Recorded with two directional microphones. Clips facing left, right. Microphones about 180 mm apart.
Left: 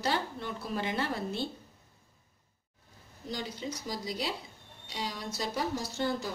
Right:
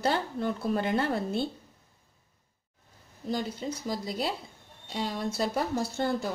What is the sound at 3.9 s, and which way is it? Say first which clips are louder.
A woman's voice: right 4 dB; 55° right (ahead or behind).